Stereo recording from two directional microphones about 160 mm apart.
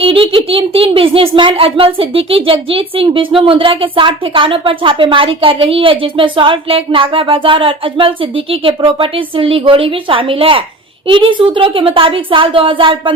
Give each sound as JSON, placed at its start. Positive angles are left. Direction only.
{"t": 0.0, "sound": "speech", "side_deg": -35}